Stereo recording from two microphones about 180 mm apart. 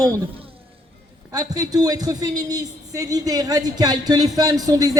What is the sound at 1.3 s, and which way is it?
A man's voice, 20° right (ahead or behind).